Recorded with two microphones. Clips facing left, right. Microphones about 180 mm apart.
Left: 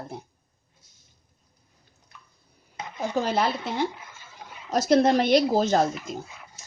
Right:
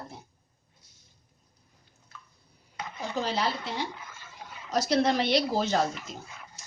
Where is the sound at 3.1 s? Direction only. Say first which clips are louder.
Left 5 dB; 50° left (ahead or behind).